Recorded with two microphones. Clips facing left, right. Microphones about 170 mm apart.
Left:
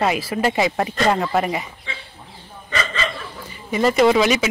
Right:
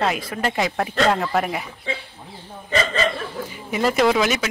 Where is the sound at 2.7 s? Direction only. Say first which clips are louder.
Right 4 dB; 40° right (ahead or behind).